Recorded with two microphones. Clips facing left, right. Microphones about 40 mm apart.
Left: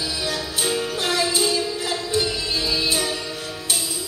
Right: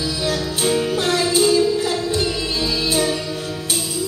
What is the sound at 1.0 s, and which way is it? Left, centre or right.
Music, centre.